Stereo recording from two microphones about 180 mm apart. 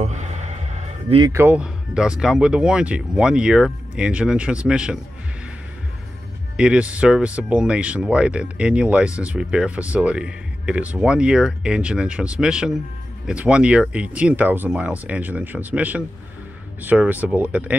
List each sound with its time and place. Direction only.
0.0 s a sound: 40° right (ahead or behind)
1.2 s speech: 15° right (ahead or behind)
6.5 s speech: 5° right (ahead or behind)